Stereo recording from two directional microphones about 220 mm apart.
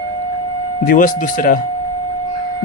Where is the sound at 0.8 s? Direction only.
40° left (ahead or behind).